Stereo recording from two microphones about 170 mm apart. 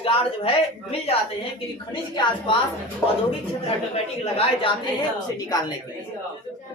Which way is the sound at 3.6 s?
35° left (ahead or behind).